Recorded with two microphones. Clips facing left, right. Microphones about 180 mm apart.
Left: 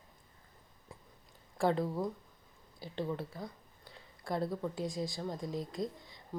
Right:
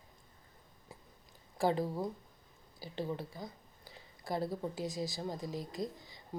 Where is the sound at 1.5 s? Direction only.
Centre (ahead or behind).